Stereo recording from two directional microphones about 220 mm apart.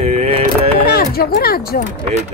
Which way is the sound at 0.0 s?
30° right (ahead or behind).